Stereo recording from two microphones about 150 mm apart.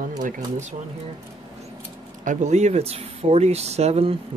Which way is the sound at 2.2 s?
55° right (ahead or behind).